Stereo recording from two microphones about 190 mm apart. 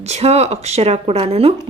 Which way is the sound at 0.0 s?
35° right (ahead or behind).